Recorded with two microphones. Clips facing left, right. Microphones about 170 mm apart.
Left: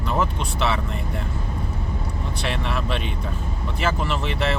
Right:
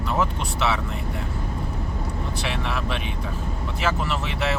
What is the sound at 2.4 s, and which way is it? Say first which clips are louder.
Speech: left 2 dB; 5° right (ahead or behind).